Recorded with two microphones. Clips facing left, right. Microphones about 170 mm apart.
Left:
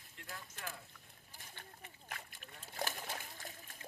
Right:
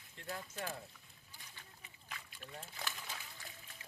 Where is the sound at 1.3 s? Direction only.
45° left (ahead or behind).